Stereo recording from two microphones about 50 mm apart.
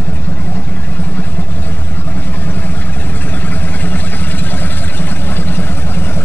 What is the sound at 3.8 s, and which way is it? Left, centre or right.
Vehicle, left.